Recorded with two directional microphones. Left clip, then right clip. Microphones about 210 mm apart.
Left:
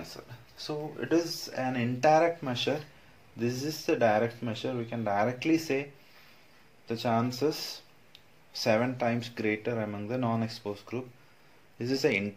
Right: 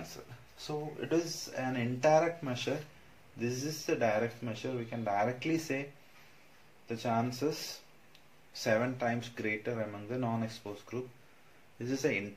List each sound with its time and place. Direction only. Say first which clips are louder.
0.6 s speech: left 3 dB; 40° left (ahead or behind)
6.9 s speech: left 4 dB; 40° left (ahead or behind)
8.5 s speech: left 4 dB; 40° left (ahead or behind)